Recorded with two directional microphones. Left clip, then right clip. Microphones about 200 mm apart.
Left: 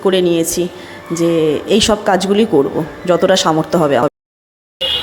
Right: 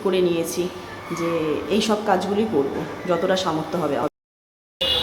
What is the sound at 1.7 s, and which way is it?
A woman's voice, 40° left (ahead or behind).